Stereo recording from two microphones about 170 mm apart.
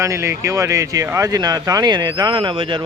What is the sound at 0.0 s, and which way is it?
Speech, 15° right (ahead or behind).